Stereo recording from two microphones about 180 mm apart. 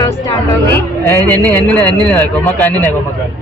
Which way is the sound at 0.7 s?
10° left (ahead or behind).